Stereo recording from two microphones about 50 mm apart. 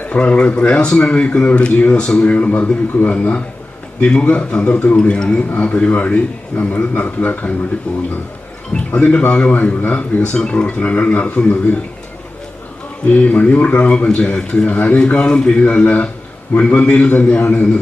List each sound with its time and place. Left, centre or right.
0.1 s a man's voice: left
4.0 s a man's voice: centre
4.9 s speech: centre
5.5 s a man's voice: left
13.1 s a man's voice: left
14.7 s a man's voice: left